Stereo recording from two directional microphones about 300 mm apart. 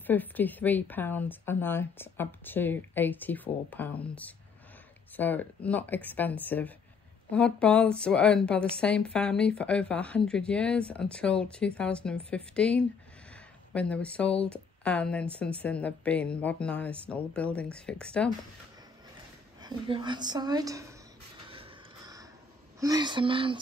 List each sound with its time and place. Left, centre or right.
0.0 s a woman's voice: centre
19.6 s a woman's voice: centre
21.5 s a sound: centre
22.8 s a woman's voice: centre